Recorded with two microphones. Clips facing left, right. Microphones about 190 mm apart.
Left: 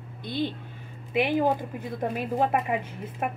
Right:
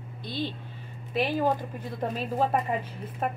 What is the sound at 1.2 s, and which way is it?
Speech, 15° left (ahead or behind).